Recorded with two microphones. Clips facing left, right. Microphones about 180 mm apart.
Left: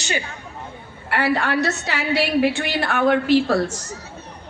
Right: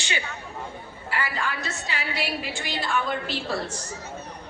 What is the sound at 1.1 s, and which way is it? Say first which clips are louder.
A woman's voice: left 9 dB; 70° left (ahead or behind).